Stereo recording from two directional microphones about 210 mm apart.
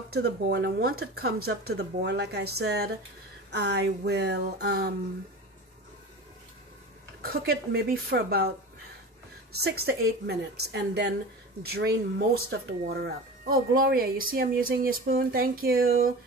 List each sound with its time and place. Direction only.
0.1 s speech: 50° right (ahead or behind)
7.2 s speech: 45° right (ahead or behind)
9.6 s speech: 50° right (ahead or behind)